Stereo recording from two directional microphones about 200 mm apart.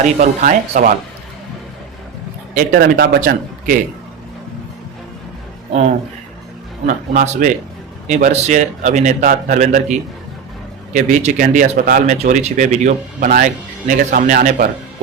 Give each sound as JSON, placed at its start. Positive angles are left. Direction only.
{"t": 0.0, "sound": "speech", "side_deg": -35}
{"t": 2.6, "sound": "a man's voice", "side_deg": -50}
{"t": 6.8, "sound": "a man's voice", "side_deg": -45}